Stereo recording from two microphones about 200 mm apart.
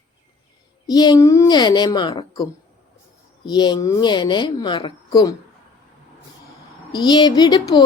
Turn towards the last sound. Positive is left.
turn(degrees=20)  # may be behind; listen again after turning